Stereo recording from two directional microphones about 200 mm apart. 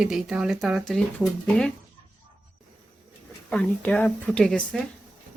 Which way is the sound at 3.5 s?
5° left (ahead or behind).